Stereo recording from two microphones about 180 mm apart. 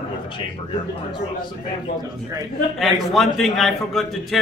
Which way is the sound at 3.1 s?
Centre (ahead or behind).